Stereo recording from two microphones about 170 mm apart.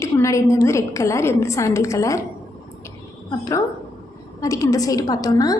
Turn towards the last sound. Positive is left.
turn(degrees=20)  # may be behind; listen again after turning